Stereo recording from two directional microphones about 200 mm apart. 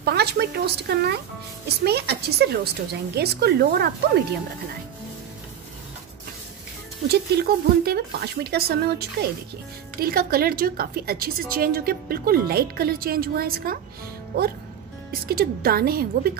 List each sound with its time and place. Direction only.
0.0 s a woman's voice: 55° right (ahead or behind)
7.1 s a woman's voice: 50° right (ahead or behind)
15.2 s a woman's voice: 50° right (ahead or behind)